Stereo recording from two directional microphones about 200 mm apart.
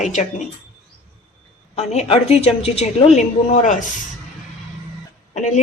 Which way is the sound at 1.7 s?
35° left (ahead or behind).